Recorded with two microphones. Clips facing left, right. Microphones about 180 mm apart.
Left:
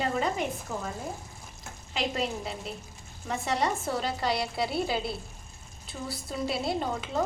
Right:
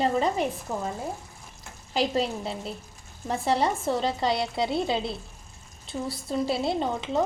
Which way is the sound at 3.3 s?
30° right (ahead or behind).